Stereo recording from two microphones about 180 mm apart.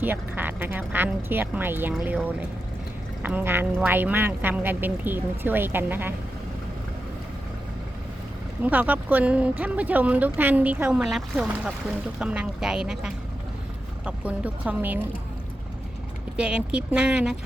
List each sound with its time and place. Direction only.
0.0 s speech: 10° right (ahead or behind)
8.6 s speech: 10° right (ahead or behind)
16.4 s speech: 5° right (ahead or behind)